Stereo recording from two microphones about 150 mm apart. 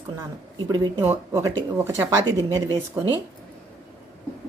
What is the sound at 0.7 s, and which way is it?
A woman's voice, 25° right (ahead or behind).